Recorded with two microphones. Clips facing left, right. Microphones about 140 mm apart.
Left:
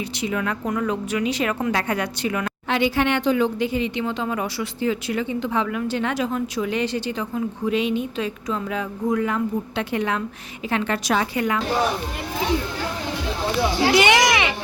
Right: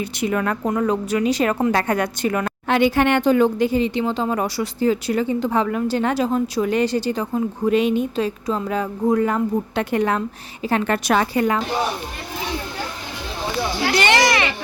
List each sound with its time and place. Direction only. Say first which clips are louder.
0.2 s a woman's voice: right 4 dB; 50° right (ahead or behind)
11.3 s a woman's voice: right 4 dB; 35° right (ahead or behind)
13.9 s speech: right 1 dB; 15° left (ahead or behind)